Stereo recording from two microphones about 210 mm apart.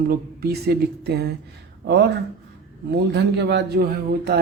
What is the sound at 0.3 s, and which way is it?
Speech, 50° right (ahead or behind).